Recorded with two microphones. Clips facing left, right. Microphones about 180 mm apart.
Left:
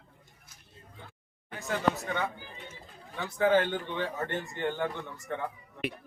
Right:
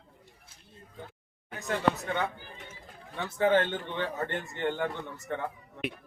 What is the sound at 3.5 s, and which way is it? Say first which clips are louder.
Speech: left 1 dB; 10° left (ahead or behind).